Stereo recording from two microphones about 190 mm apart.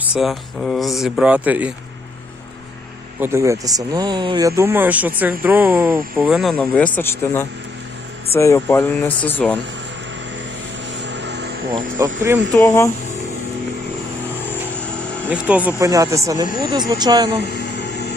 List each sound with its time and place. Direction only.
0.0 s speech: 5° right (ahead or behind)
3.2 s speech: 15° right (ahead or behind); by 9.6 s 10° left (ahead or behind)
11.0 s vehicle: 65° right (ahead or behind)
11.7 s speech: 20° right (ahead or behind)
12.5 s speech: 15° left (ahead or behind)
15.3 s speech: 5° right (ahead or behind)
15.8 s speech: 15° right (ahead or behind)
17.4 s a sound: 60° left (ahead or behind)